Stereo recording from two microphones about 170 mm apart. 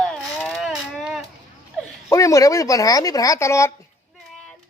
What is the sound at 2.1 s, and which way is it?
Speech, 20° left (ahead or behind).